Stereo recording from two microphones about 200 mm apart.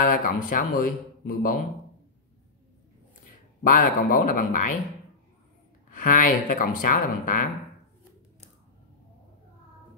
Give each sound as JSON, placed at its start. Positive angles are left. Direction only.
{"t": 0.0, "sound": "a man's voice", "side_deg": 45}
{"t": 3.7, "sound": "a man's voice", "side_deg": 45}
{"t": 5.9, "sound": "a man's voice", "side_deg": 45}